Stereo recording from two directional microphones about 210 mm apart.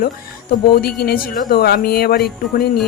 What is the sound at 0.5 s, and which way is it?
A woman's voice, 45° left (ahead or behind).